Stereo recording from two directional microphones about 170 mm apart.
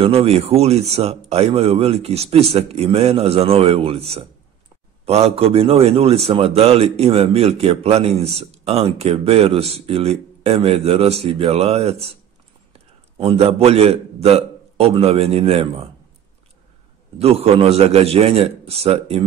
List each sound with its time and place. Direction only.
0.0 s a man's voice: 35° right (ahead or behind)
13.2 s a man's voice: 35° right (ahead or behind)
17.2 s a man's voice: 35° right (ahead or behind)